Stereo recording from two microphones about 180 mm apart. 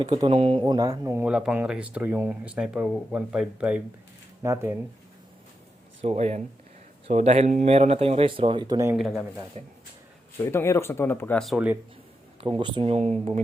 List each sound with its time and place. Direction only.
0.0 s speech: 25° right (ahead or behind)
6.0 s speech: 35° right (ahead or behind); by 9.0 s 20° right (ahead or behind)
9.0 s speech: centre (ahead or behind)
9.6 s speech: 35° right (ahead or behind)
10.3 s speech: 15° left (ahead or behind)
12.4 s speech: 30° right (ahead or behind)